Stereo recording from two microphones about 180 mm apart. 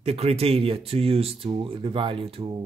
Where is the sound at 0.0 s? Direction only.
35° right (ahead or behind).